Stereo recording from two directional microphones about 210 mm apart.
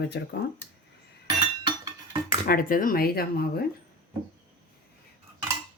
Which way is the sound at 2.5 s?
40° left (ahead or behind).